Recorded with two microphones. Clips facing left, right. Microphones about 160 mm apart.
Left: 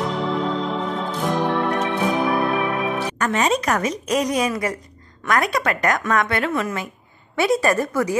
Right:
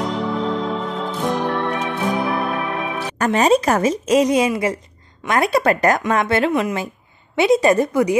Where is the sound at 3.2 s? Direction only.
35° right (ahead or behind).